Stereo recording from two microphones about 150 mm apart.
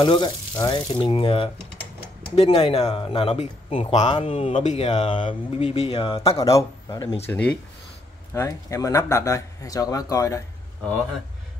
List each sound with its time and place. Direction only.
0.0 s speech: 30° left (ahead or behind); by 4.1 s 50° left (ahead or behind)
4.1 s speech: 35° left (ahead or behind)
6.3 s speech: 20° left (ahead or behind)
7.2 s speech: 5° left (ahead or behind)
8.3 s speech: 20° left (ahead or behind)